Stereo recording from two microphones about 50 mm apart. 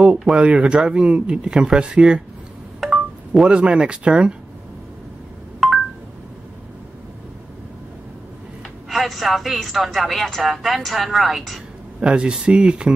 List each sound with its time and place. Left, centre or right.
0.3 s speech: centre
2.8 s wind chime: centre
3.4 s speech: right
5.6 s telephone dialing: centre
8.8 s speech: centre
12.0 s speech: centre